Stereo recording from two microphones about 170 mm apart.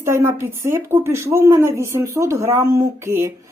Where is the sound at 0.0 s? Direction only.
15° right (ahead or behind).